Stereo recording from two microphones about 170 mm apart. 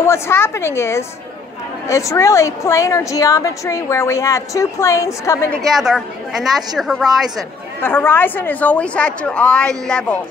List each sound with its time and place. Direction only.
0.0 s a woman's voice: 15° left (ahead or behind)
5.5 s a woman's voice: centre (ahead or behind)
7.8 s a woman's voice: 10° left (ahead or behind)